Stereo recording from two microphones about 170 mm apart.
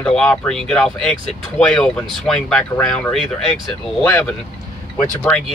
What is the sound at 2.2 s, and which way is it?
Speech, 5° left (ahead or behind).